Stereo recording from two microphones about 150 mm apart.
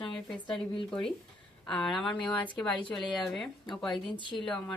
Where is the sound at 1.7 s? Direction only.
Centre (ahead or behind).